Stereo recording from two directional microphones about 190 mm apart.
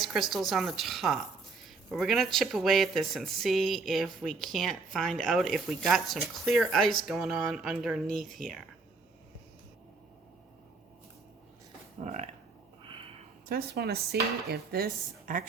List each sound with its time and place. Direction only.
0.0 s speech: centre (ahead or behind)
11.9 s speech: 35° right (ahead or behind)
12.9 s a sound: 30° right (ahead or behind)
13.5 s dishes: 55° right (ahead or behind)
15.3 s a woman's voice: 45° right (ahead or behind)